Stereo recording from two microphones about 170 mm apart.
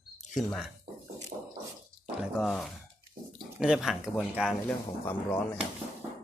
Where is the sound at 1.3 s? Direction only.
40° right (ahead or behind).